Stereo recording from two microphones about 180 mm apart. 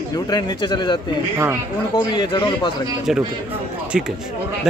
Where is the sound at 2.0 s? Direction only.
25° left (ahead or behind).